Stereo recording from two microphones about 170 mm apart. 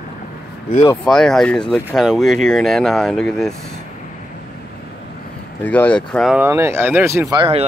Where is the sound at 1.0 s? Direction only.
Centre (ahead or behind).